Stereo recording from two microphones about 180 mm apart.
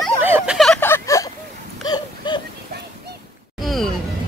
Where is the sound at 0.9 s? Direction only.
20° left (ahead or behind).